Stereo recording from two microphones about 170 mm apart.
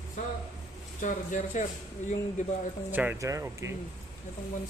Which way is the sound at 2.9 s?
10° right (ahead or behind).